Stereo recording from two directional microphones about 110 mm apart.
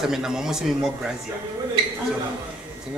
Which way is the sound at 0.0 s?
5° right (ahead or behind).